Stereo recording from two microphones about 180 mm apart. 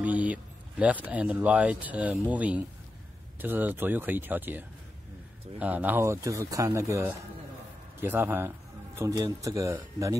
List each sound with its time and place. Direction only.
0.0 s speech: 10° right (ahead or behind)